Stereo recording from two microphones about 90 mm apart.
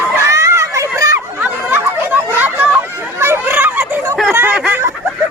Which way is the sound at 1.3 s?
20° right (ahead or behind).